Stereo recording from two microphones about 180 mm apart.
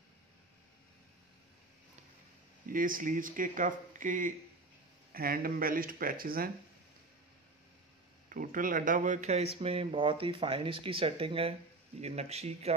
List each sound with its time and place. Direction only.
2.7 s speech: 50° right (ahead or behind)
8.3 s speech: 45° right (ahead or behind)